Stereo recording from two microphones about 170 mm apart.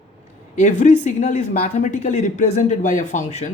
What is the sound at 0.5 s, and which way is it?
Speech, 45° left (ahead or behind).